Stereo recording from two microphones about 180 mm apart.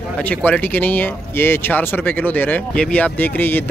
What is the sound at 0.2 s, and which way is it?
Speech, 10° left (ahead or behind).